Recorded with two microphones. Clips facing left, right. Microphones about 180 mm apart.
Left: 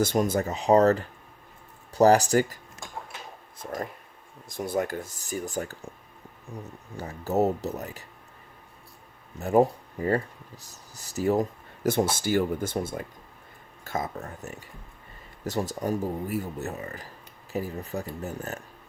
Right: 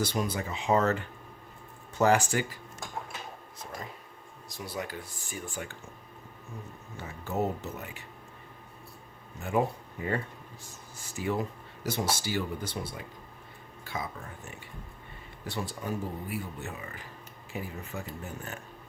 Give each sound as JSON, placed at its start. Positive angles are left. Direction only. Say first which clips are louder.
{"t": 0.0, "sound": "speech", "louder": "left 7 dB", "side_deg": 45}
{"t": 4.4, "sound": "speech", "louder": "left 9 dB", "side_deg": 50}
{"t": 6.9, "sound": "speech", "louder": "left 7 dB", "side_deg": 40}
{"t": 9.4, "sound": "speech", "louder": "left 7 dB", "side_deg": 40}